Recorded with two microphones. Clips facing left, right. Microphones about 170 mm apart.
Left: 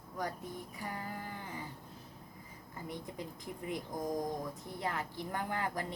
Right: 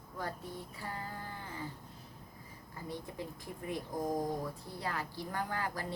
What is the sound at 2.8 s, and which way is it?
A woman's voice, 20° left (ahead or behind).